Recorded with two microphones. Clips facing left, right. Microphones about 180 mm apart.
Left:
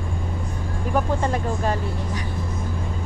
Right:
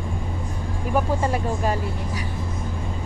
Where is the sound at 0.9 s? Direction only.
10° right (ahead or behind).